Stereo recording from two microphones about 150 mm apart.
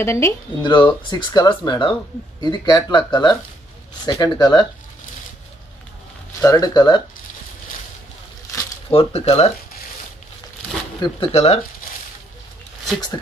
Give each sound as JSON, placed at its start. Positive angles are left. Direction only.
{"t": 0.0, "sound": "speech", "side_deg": 20}
{"t": 0.6, "sound": "speech", "side_deg": 30}
{"t": 6.4, "sound": "speech", "side_deg": 25}
{"t": 8.9, "sound": "speech", "side_deg": 45}
{"t": 11.0, "sound": "speech", "side_deg": 40}